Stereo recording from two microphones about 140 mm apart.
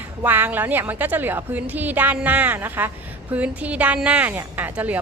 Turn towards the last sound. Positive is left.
turn(degrees=-10)  # may be behind; listen again after turning